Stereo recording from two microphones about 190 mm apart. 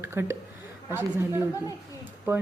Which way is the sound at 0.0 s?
15° right (ahead or behind).